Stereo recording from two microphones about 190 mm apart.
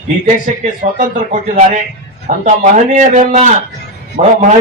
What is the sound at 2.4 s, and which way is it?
A man's voice, 40° right (ahead or behind).